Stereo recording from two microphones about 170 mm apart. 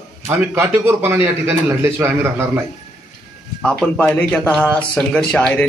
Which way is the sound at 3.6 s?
5° left (ahead or behind).